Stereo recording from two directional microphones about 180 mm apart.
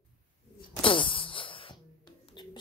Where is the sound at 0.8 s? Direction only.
30° left (ahead or behind).